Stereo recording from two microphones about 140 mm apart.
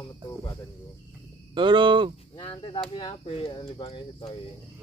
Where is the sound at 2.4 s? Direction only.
40° left (ahead or behind).